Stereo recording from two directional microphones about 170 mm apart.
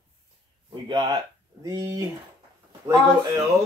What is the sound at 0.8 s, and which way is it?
Speech, 25° right (ahead or behind).